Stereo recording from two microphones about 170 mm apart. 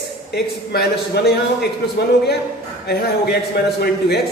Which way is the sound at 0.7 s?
70° left (ahead or behind).